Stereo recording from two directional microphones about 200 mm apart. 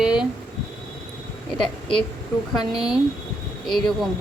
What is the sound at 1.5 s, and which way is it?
Speech, 25° left (ahead or behind).